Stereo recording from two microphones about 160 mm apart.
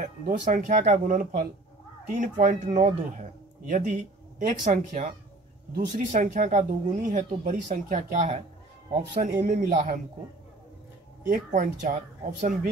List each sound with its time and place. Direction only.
0.0 s speech: 55° right (ahead or behind)
11.2 s speech: 60° right (ahead or behind)